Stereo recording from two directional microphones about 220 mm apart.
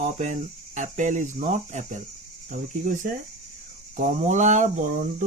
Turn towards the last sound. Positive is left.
turn(degrees=-35)  # may be behind; listen again after turning